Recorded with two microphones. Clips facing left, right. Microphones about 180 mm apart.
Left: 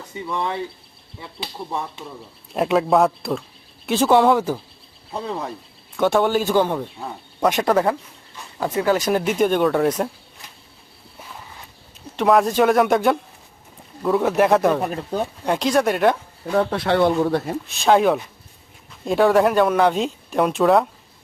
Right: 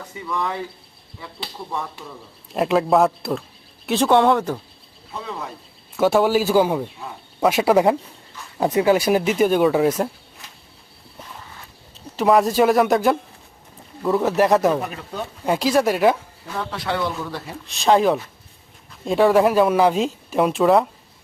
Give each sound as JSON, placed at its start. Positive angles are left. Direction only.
{"t": 0.1, "sound": "speech", "side_deg": 25}
{"t": 2.5, "sound": "speech", "side_deg": 0}
{"t": 6.0, "sound": "speech", "side_deg": -5}
{"t": 12.1, "sound": "speech", "side_deg": 0}
{"t": 16.5, "sound": "speech", "side_deg": 55}
{"t": 17.7, "sound": "speech", "side_deg": 0}